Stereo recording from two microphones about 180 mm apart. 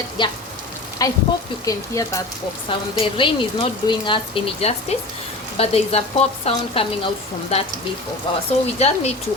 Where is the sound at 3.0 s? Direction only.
30° left (ahead or behind).